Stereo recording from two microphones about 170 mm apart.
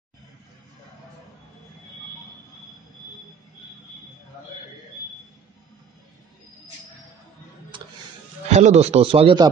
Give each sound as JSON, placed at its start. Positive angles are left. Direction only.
{"t": 7.7, "sound": "music", "side_deg": -30}
{"t": 8.5, "sound": "a man's voice", "side_deg": -40}